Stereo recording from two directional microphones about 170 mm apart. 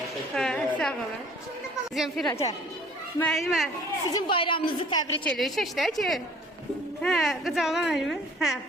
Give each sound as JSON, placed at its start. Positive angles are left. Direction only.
{"t": 0.3, "sound": "a sound", "side_deg": 5}
{"t": 2.0, "sound": "a woman's voice", "side_deg": 0}
{"t": 4.1, "sound": "a woman's voice", "side_deg": 30}
{"t": 5.2, "sound": "a woman's voice", "side_deg": 0}